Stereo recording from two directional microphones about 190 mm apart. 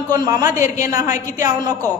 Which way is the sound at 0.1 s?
20° right (ahead or behind).